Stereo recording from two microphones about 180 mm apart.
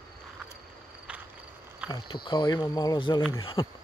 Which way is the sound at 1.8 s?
5° right (ahead or behind).